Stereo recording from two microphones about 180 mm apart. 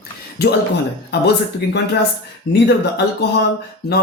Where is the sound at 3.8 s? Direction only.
65° left (ahead or behind).